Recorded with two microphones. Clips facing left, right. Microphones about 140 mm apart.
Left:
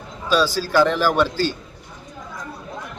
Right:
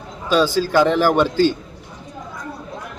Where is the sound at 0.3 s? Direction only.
20° right (ahead or behind).